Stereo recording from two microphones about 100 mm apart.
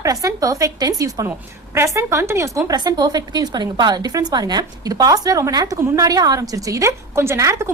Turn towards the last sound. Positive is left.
turn(degrees=-30)  # may be behind; listen again after turning